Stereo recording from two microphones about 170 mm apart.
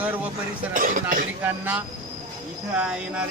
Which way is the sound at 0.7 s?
50° right (ahead or behind).